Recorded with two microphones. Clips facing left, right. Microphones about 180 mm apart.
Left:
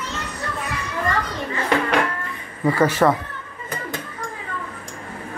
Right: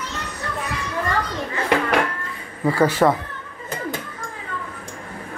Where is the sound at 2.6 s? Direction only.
10° right (ahead or behind).